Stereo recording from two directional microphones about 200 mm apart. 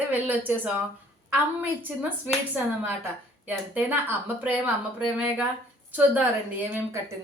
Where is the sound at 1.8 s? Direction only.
5° right (ahead or behind).